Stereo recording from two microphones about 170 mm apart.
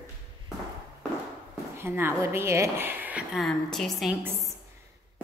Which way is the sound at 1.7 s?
15° right (ahead or behind).